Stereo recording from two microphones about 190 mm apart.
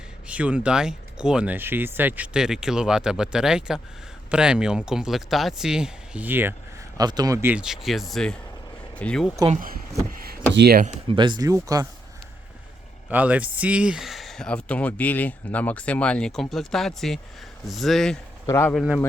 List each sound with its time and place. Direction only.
0.3 s speech: 5° right (ahead or behind)
6.9 s speech: 20° right (ahead or behind)
7.5 s speech: 5° right (ahead or behind)
9.5 s speech: 45° right (ahead or behind)
10.5 s speech: 55° right (ahead or behind)
11.1 s speech: 25° right (ahead or behind)
13.1 s speech: 10° right (ahead or behind)
18.4 s speech: 10° left (ahead or behind)